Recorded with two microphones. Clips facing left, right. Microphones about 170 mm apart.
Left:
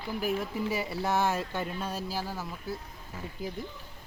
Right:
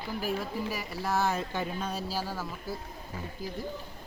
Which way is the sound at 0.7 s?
25° left (ahead or behind).